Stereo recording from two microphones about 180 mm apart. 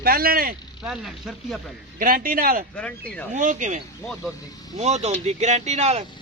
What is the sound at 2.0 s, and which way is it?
Speech, 50° right (ahead or behind).